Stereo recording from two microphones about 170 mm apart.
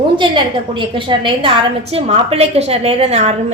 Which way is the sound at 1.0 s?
30° right (ahead or behind).